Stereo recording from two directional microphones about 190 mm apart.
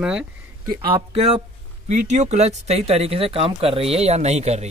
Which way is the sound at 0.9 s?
30° right (ahead or behind).